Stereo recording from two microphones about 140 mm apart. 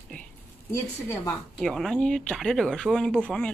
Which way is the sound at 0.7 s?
20° left (ahead or behind).